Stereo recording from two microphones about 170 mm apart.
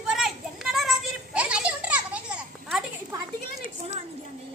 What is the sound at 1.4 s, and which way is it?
Children playing, 5° right (ahead or behind).